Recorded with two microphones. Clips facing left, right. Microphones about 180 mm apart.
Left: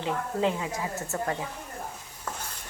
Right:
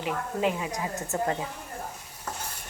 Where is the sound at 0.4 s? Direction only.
15° right (ahead or behind).